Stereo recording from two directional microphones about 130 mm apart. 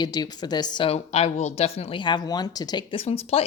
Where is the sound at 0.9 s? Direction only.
50° left (ahead or behind).